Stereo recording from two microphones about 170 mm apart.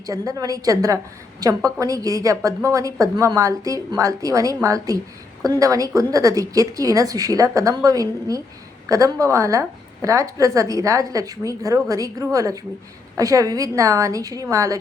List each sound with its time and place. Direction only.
0.0 s a woman's voice: 20° right (ahead or behind)